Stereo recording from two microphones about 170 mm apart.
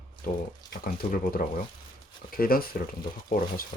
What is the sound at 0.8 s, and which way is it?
Speech, 55° left (ahead or behind).